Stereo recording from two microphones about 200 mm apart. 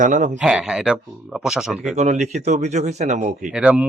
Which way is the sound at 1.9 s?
35° right (ahead or behind).